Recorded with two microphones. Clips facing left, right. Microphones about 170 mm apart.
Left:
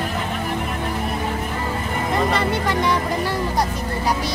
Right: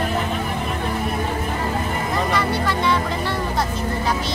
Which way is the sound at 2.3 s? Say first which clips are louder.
Left 1 dB; 20° left (ahead or behind).